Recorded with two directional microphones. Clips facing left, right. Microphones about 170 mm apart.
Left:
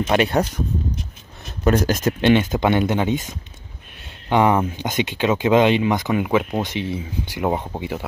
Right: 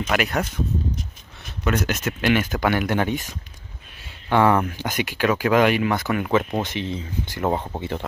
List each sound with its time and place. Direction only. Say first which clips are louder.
0.0 s speech: left 5 dB; 30° left (ahead or behind)
1.6 s speech: left 5 dB; 35° left (ahead or behind)
2.3 s speech: left 4 dB; 25° left (ahead or behind)